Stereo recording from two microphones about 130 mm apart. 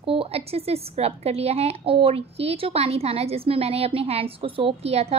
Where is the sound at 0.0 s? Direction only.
45° right (ahead or behind).